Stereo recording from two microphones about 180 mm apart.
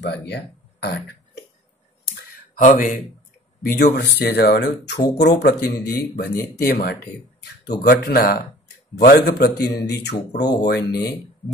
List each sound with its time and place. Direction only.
0.0 s speech: 70° left (ahead or behind)
2.1 s a sound: 50° left (ahead or behind)
3.6 s speech: 60° left (ahead or behind)